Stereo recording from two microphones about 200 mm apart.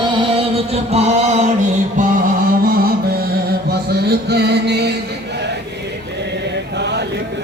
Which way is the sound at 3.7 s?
55° right (ahead or behind).